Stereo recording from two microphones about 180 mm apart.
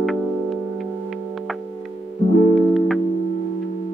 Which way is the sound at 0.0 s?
Centre (ahead or behind).